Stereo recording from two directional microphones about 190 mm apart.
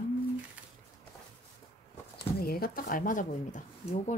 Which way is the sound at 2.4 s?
50° left (ahead or behind).